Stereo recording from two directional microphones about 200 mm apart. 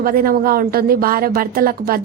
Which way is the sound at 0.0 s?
45° right (ahead or behind).